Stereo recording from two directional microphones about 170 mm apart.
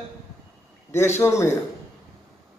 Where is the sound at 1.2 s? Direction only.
15° left (ahead or behind).